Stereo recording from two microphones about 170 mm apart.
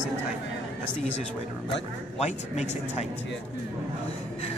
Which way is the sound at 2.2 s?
40° left (ahead or behind).